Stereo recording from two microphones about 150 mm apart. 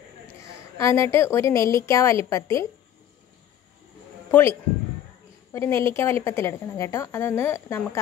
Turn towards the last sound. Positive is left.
turn(degrees=15)  # may be behind; listen again after turning